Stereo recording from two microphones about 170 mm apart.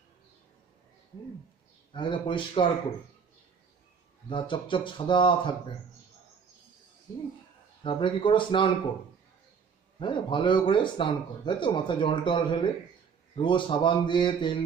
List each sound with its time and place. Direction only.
1.9 s speech: 30° left (ahead or behind)
4.3 s speech: 30° left (ahead or behind)
7.8 s speech: 30° left (ahead or behind)
9.9 s speech: 30° left (ahead or behind)